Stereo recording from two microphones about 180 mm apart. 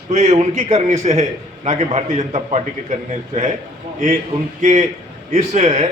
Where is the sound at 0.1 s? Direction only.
40° right (ahead or behind).